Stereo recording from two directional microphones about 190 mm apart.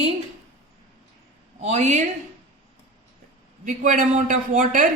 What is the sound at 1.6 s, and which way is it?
Speech, 35° right (ahead or behind).